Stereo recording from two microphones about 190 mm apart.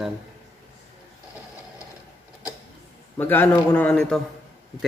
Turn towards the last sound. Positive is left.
turn(degrees=0)  # may be behind; listen again after turning